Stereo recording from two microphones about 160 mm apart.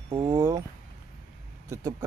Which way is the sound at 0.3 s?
15° right (ahead or behind).